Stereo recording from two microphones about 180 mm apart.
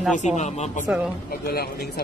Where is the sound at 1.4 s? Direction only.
60° left (ahead or behind).